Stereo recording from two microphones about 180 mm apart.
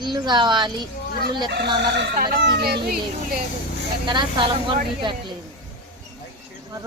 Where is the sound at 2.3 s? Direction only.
65° right (ahead or behind).